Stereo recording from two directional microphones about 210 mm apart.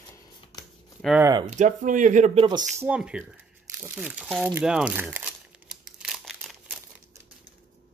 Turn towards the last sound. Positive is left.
turn(degrees=0)  # may be behind; listen again after turning